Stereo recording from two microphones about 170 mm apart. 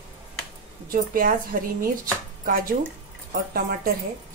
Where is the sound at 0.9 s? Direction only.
60° right (ahead or behind).